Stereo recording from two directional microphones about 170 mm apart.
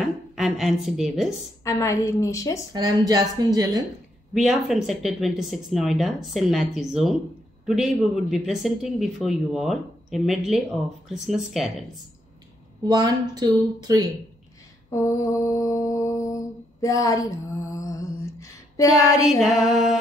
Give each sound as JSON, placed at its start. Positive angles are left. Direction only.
{"t": 0.0, "sound": "speech", "side_deg": 0}
{"t": 1.6, "sound": "mantra", "side_deg": 20}
{"t": 2.7, "sound": "speech", "side_deg": -20}
{"t": 4.3, "sound": "speech", "side_deg": 0}
{"t": 12.8, "sound": "speech", "side_deg": -25}
{"t": 14.9, "sound": "mantra", "side_deg": 20}
{"t": 19.4, "sound": "speech", "side_deg": 0}